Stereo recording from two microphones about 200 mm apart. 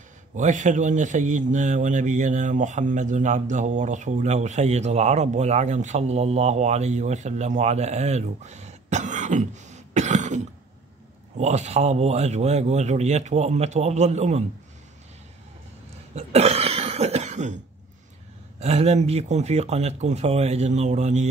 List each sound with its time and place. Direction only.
0.4 s a man's voice: 40° right (ahead or behind)
16.2 s cough: 30° right (ahead or behind)
18.6 s a man's voice: 30° right (ahead or behind)